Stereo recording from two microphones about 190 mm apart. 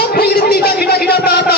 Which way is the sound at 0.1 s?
55° left (ahead or behind).